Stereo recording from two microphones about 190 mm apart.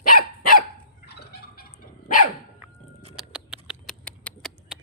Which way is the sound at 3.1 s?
5° right (ahead or behind).